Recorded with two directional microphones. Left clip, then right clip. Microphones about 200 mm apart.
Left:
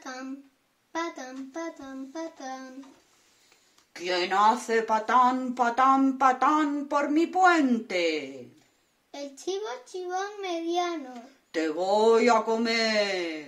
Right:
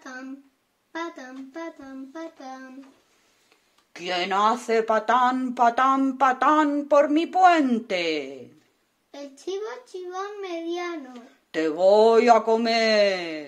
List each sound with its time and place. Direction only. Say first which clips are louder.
0.0 s a sound: even; centre (ahead or behind)
3.9 s speech: right 1 dB; 45° right (ahead or behind)
10.0 s a child's voice: left 1 dB; 5° left (ahead or behind)
11.5 s speech: right 7 dB; 50° right (ahead or behind)